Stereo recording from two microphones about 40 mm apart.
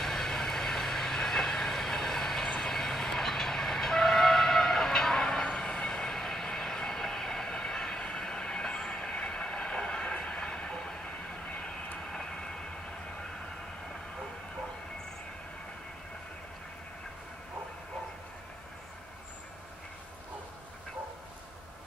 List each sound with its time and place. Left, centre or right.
0.0 s train: centre
2.4 s train: left
2.7 s train: centre
5.8 s vehicle: centre
12.0 s vehicle: centre